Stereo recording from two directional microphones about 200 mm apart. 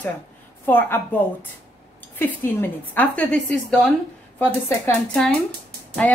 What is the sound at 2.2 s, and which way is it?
A woman's voice, 10° left (ahead or behind).